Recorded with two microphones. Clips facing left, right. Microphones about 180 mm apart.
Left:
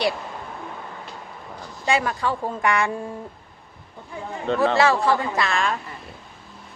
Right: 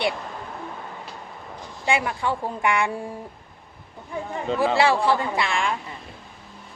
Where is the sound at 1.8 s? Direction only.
15° right (ahead or behind).